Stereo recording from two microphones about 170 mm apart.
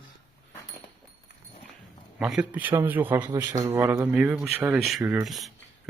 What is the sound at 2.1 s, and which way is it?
Speech, 5° right (ahead or behind).